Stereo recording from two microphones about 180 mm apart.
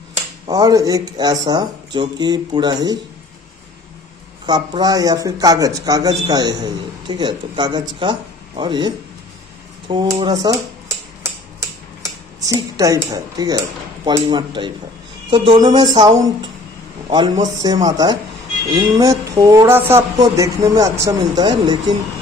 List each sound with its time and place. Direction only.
0.5 s speech: 20° right (ahead or behind)
4.5 s speech: 25° right (ahead or behind)
10.0 s speech: 20° right (ahead or behind)
12.4 s speech: 20° right (ahead or behind)